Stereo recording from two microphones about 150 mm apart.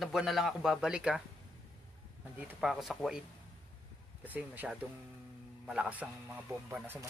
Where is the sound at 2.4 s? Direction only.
5° right (ahead or behind).